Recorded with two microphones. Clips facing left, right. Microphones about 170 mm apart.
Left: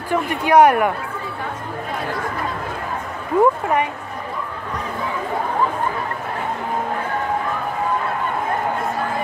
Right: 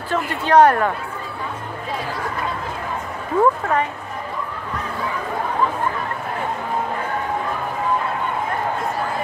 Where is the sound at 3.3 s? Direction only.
10° left (ahead or behind).